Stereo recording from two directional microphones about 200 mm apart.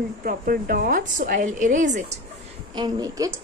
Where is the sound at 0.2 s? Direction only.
45° right (ahead or behind).